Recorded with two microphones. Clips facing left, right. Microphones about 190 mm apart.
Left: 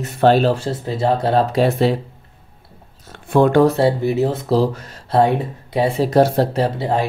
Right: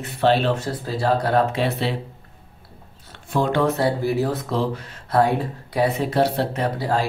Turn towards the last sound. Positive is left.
turn(degrees=20)  # may be behind; listen again after turning